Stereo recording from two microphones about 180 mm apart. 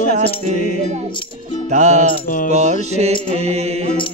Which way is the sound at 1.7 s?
40° right (ahead or behind).